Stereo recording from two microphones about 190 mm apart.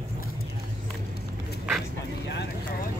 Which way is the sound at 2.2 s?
65° left (ahead or behind).